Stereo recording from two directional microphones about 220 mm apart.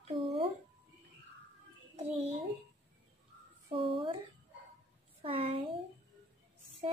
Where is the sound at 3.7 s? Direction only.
25° right (ahead or behind).